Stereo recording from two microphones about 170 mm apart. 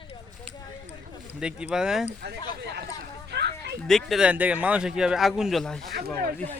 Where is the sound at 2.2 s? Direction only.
75° right (ahead or behind).